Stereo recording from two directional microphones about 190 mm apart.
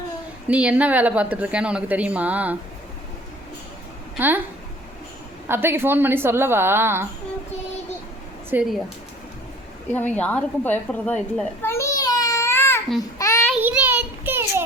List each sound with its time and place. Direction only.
0.4 s a woman's voice: 5° right (ahead or behind)
4.2 s a woman's voice: 10° right (ahead or behind)
5.5 s a woman's voice: 10° right (ahead or behind)
8.4 s a woman's voice: 10° right (ahead or behind)
9.9 s a child's voice: 10° left (ahead or behind)
13.0 s child singing: 15° left (ahead or behind)
13.5 s a sound: 5° right (ahead or behind)